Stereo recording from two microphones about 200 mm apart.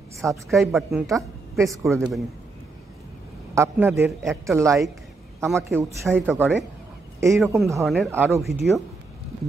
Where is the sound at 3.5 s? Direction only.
10° right (ahead or behind).